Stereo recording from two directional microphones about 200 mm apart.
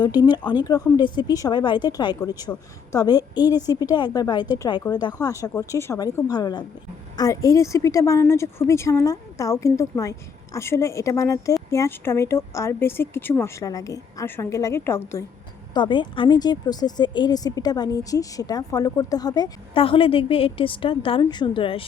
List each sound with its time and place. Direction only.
0.2 s a woman's voice: 20° left (ahead or behind)
15.7 s speech: 25° left (ahead or behind)